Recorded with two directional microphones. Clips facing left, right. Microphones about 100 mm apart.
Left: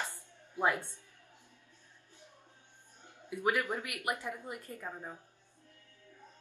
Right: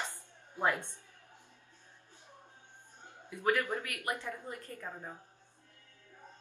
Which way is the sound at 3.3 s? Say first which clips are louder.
Right 1 dB; 15° left (ahead or behind).